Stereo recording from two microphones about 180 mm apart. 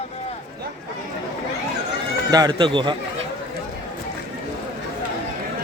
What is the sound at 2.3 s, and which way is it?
Speech, 20° right (ahead or behind).